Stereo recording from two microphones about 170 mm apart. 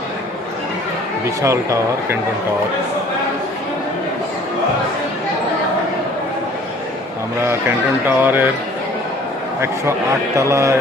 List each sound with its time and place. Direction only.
1.4 s speech: 20° right (ahead or behind)
8.0 s speech: 10° right (ahead or behind)
10.3 s speech: 20° right (ahead or behind)